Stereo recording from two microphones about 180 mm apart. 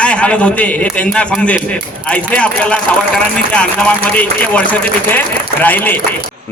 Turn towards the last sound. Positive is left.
turn(degrees=10)  # may be behind; listen again after turning